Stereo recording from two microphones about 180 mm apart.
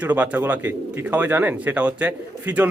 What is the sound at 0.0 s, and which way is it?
Speech, 10° right (ahead or behind).